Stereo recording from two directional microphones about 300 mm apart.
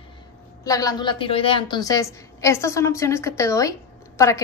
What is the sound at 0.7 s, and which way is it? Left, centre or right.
A woman's voice, centre.